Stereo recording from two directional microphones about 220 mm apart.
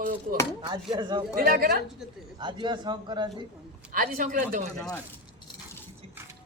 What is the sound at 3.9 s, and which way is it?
Speech, 40° right (ahead or behind).